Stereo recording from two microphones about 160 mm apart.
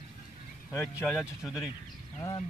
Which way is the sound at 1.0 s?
Centre (ahead or behind).